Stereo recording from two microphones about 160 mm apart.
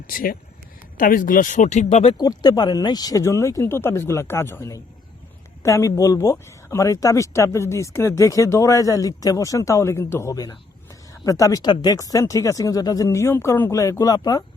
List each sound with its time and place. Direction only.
0.1 s speech: 60° left (ahead or behind); by 2.1 s 40° left (ahead or behind)
2.1 s speech: 25° left (ahead or behind)